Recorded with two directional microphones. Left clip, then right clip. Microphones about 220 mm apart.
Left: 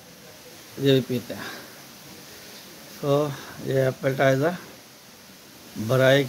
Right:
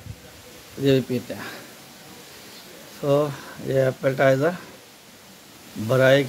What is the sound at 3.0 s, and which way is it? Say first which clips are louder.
Speech: right 2 dB; centre (ahead or behind).